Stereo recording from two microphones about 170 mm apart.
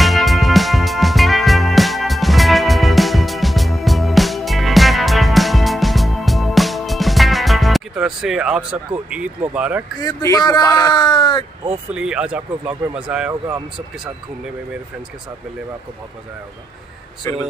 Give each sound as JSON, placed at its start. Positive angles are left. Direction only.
{"t": 0.0, "sound": "music", "side_deg": 0}
{"t": 10.0, "sound": "speech", "side_deg": 20}
{"t": 11.9, "sound": "speech", "side_deg": -5}
{"t": 17.2, "sound": "speech", "side_deg": 20}